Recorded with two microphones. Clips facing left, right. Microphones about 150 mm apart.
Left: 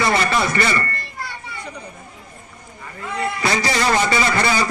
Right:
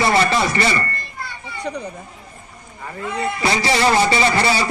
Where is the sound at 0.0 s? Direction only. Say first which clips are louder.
Right 2 dB; 30° right (ahead or behind).